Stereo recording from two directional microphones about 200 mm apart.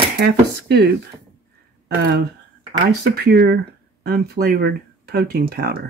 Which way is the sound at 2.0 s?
55° right (ahead or behind).